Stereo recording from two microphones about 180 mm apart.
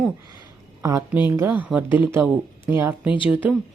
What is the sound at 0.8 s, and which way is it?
Speech, 20° right (ahead or behind).